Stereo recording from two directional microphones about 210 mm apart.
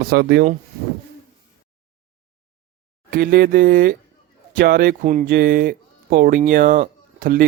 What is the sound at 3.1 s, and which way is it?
Speech, 45° right (ahead or behind).